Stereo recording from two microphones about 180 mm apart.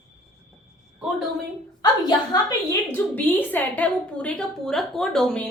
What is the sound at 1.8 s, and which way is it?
Speech, 20° left (ahead or behind).